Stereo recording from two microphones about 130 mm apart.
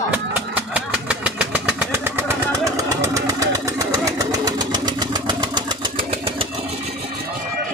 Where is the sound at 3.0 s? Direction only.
25° right (ahead or behind).